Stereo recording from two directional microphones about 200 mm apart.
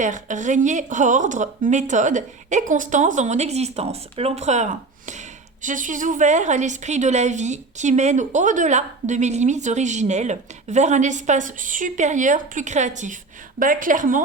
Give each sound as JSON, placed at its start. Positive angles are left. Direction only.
{"t": 0.0, "sound": "a woman's voice", "side_deg": -40}